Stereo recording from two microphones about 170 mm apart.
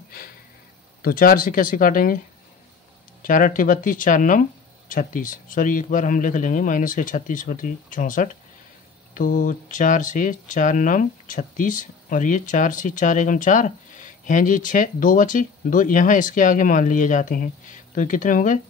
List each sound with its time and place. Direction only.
1.0 s speech: 60° left (ahead or behind)
3.2 s speech: 55° left (ahead or behind)